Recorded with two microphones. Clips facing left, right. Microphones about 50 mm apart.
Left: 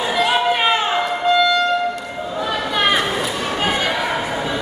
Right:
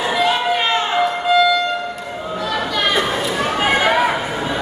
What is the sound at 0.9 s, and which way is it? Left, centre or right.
Music, centre.